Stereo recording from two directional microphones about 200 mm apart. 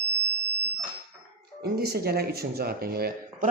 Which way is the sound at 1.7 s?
50° right (ahead or behind).